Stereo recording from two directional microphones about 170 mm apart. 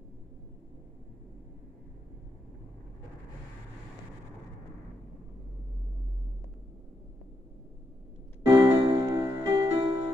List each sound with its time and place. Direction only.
8.5 s music: 15° right (ahead or behind)